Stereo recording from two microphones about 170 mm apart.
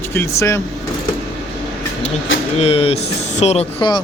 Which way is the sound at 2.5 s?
35° left (ahead or behind).